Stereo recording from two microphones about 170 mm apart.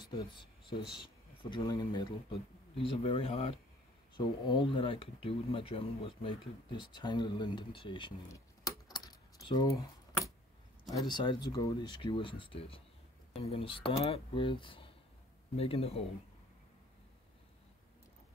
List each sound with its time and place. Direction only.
0.0 s speech: 30° left (ahead or behind)
8.3 s keys jangling: 20° left (ahead or behind)
9.8 s a sound: 20° left (ahead or behind)
10.9 s speech: 25° left (ahead or behind)